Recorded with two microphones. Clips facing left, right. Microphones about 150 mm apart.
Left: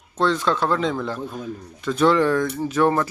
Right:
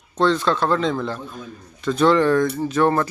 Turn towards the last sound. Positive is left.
turn(degrees=10)  # may be behind; listen again after turning